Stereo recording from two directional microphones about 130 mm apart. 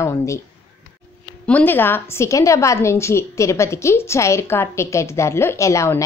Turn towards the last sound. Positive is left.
turn(degrees=20)  # may be behind; listen again after turning